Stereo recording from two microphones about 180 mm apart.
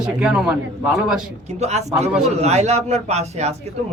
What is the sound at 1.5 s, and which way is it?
A man's voice, 40° right (ahead or behind).